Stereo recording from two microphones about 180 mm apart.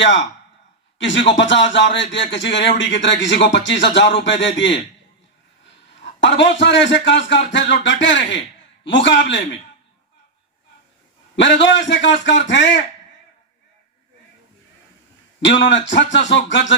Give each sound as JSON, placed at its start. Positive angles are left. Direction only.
{"t": 0.9, "sound": "a man's voice", "side_deg": 90}
{"t": 6.1, "sound": "a man's voice", "side_deg": 85}
{"t": 11.3, "sound": "a man's voice", "side_deg": 80}
{"t": 15.4, "sound": "a man's voice", "side_deg": 85}